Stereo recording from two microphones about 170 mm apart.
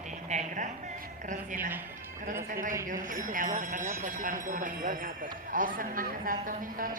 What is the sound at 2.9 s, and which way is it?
Speech, 50° right (ahead or behind).